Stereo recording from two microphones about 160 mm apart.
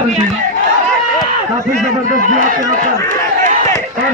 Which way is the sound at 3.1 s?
55° right (ahead or behind).